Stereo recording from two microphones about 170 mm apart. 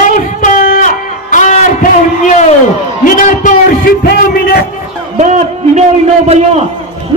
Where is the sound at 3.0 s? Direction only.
50° left (ahead or behind).